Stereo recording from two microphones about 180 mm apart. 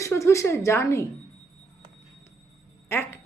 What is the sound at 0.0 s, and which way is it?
A woman's voice, 15° left (ahead or behind).